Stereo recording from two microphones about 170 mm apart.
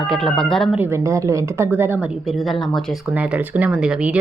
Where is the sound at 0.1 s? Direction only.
5° left (ahead or behind).